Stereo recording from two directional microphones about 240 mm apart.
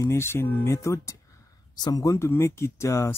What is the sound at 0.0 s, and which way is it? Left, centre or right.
Speech, centre.